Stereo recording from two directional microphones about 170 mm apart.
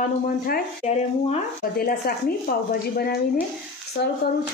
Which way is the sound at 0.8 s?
40° left (ahead or behind).